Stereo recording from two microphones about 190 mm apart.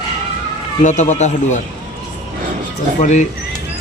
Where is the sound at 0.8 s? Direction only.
40° left (ahead or behind).